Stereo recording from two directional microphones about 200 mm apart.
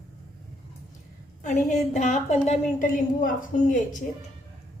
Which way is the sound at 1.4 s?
35° left (ahead or behind).